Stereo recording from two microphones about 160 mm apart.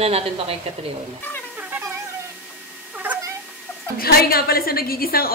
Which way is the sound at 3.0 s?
10° right (ahead or behind).